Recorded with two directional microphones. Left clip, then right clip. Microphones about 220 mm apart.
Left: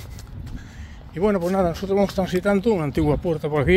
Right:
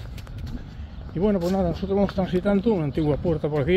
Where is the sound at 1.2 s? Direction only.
35° left (ahead or behind).